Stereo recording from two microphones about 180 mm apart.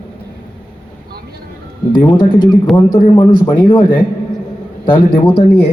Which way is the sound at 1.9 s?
25° left (ahead or behind).